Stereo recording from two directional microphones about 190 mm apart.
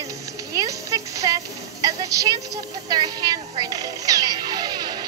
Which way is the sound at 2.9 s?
20° right (ahead or behind).